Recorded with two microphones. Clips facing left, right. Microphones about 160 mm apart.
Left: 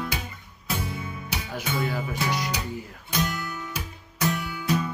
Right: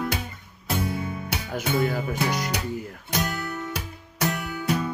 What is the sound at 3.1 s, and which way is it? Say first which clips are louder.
Guitar: even; 60° right (ahead or behind).